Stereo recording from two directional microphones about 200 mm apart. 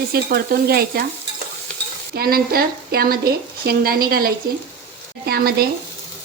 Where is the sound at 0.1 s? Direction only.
50° right (ahead or behind).